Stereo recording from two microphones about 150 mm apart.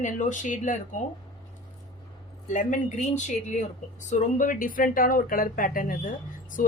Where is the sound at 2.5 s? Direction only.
60° left (ahead or behind).